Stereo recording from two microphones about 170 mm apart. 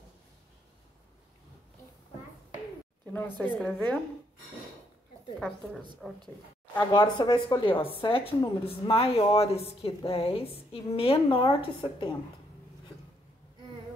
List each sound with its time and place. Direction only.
3.3 s a woman's voice: 5° left (ahead or behind)
6.0 s a woman's voice: centre (ahead or behind)
6.9 s a woman's voice: 25° left (ahead or behind)